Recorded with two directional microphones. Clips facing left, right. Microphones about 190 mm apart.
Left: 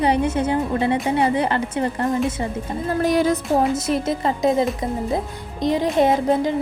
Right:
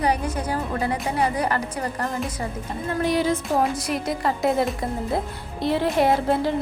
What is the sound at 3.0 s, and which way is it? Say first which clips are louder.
Music: left 3 dB; 45° left (ahead or behind).